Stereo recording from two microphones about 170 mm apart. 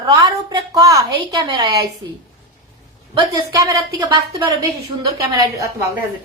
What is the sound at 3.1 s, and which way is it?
A woman's voice, 25° right (ahead or behind).